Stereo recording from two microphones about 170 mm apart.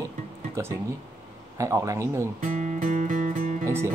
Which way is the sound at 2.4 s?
45° right (ahead or behind).